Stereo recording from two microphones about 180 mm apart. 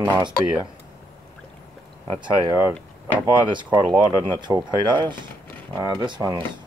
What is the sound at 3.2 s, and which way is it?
Speech, 25° right (ahead or behind).